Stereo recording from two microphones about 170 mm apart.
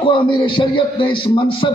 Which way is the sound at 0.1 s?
30° left (ahead or behind).